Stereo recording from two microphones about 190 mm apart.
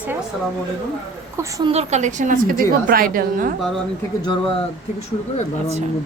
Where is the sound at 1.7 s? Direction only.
35° right (ahead or behind).